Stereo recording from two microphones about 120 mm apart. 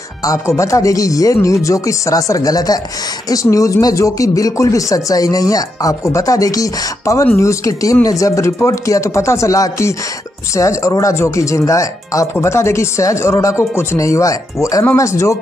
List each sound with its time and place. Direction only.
0.2 s speech: 25° left (ahead or behind)